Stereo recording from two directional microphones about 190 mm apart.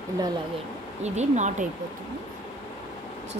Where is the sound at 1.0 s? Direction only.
40° right (ahead or behind).